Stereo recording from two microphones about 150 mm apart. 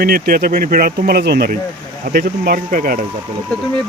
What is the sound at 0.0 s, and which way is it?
Speech, 85° right.